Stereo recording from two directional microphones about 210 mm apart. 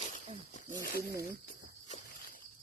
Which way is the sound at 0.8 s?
45° left (ahead or behind).